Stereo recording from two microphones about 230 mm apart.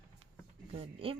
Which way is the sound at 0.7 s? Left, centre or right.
Right.